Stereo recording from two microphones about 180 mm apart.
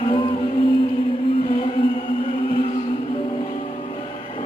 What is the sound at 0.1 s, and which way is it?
Music, 30° left (ahead or behind).